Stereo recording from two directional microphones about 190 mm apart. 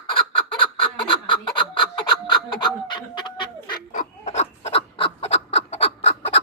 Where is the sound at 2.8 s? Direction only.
25° left (ahead or behind).